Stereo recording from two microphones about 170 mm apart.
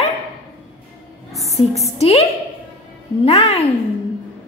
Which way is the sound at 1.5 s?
40° left (ahead or behind).